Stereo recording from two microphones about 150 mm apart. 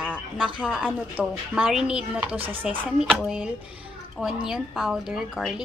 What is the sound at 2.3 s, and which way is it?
Speech, 35° right (ahead or behind).